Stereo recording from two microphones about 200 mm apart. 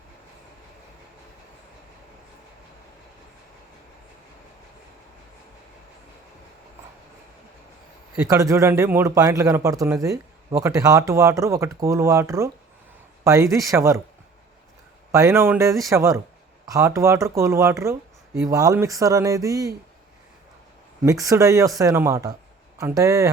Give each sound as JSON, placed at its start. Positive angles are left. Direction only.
{"t": 8.3, "sound": "speech", "side_deg": -15}
{"t": 15.1, "sound": "speech", "side_deg": -15}
{"t": 21.0, "sound": "speech", "side_deg": -15}